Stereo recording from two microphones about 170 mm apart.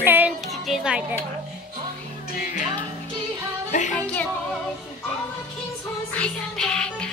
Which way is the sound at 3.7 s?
45° left (ahead or behind).